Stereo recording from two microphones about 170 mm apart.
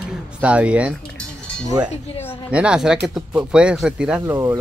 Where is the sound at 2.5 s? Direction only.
5° right (ahead or behind).